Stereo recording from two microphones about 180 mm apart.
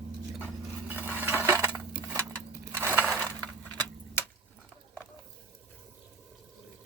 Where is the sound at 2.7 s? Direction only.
15° right (ahead or behind).